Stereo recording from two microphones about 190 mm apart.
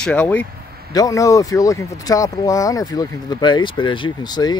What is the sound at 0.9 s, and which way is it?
Speech, 20° left (ahead or behind).